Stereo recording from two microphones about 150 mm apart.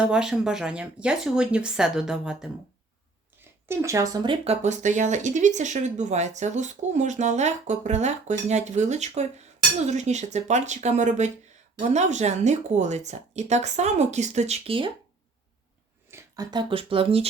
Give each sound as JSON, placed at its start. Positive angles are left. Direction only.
{"t": 0.0, "sound": "speech", "side_deg": -5}
{"t": 3.7, "sound": "speech", "side_deg": -20}
{"t": 4.6, "sound": "speech", "side_deg": -55}
{"t": 16.0, "sound": "speech", "side_deg": -20}